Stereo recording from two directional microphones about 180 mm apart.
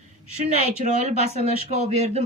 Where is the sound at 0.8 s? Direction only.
40° right (ahead or behind).